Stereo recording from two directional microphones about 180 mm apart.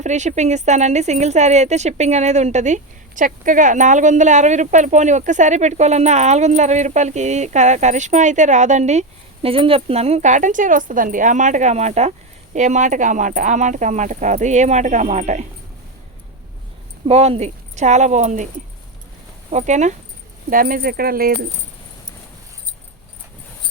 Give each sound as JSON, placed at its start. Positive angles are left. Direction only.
{"t": 0.0, "sound": "speech", "side_deg": -40}
{"t": 17.1, "sound": "speech", "side_deg": -35}
{"t": 19.5, "sound": "speech", "side_deg": -40}